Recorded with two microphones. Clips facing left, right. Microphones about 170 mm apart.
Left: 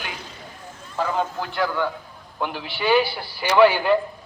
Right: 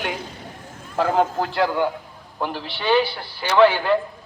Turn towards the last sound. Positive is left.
turn(degrees=15)  # may be behind; listen again after turning